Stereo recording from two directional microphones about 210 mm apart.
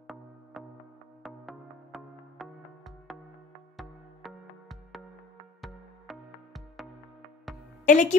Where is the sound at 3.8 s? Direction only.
Centre (ahead or behind).